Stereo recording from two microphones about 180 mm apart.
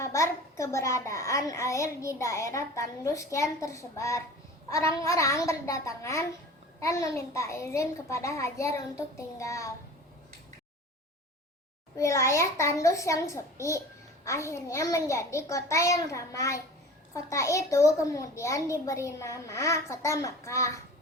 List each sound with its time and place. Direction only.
0.0 s a child's voice: 15° left (ahead or behind)
11.9 s a child's voice: 15° left (ahead or behind)